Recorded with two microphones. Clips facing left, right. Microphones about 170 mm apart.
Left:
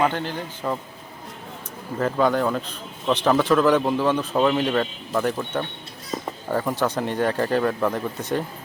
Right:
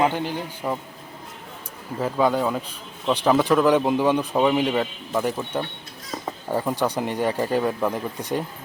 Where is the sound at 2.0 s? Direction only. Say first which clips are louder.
Left 1 dB; 10° right (ahead or behind).